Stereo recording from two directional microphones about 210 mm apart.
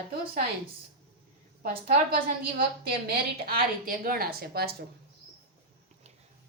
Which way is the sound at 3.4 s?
45° right (ahead or behind).